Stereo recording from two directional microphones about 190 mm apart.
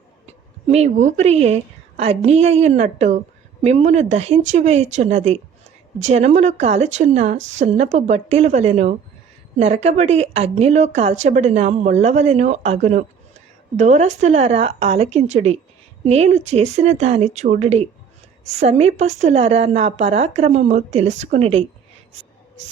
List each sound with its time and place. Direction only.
0.3 s speech: 35° right (ahead or behind)